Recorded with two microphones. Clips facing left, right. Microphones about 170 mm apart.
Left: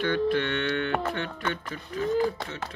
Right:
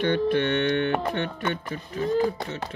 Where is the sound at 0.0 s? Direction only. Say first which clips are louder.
Right 3 dB; 20° right (ahead or behind).